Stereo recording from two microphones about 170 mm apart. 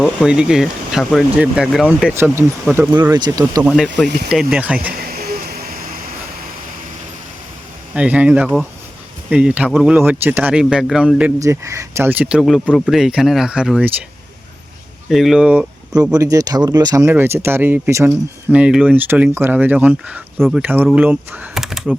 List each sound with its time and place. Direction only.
0.0 s speech: 5° right (ahead or behind); by 3.7 s 20° right (ahead or behind)
4.3 s speech: 5° right (ahead or behind)
4.9 s a sound: 60° right (ahead or behind)
7.9 s speech: 5° right (ahead or behind)
11.3 s speech: 20° right (ahead or behind)
15.1 s speech: centre (ahead or behind)
16.1 s speech: 20° right (ahead or behind); by 21.9 s centre (ahead or behind)